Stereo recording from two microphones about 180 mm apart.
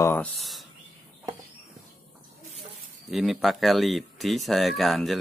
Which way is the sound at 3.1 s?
Centre (ahead or behind).